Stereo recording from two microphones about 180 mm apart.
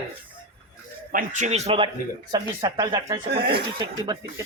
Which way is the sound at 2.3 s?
20° right (ahead or behind).